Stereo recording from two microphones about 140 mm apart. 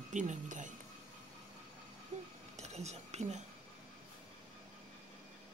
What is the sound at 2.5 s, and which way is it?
Cutlery, 55° right (ahead or behind).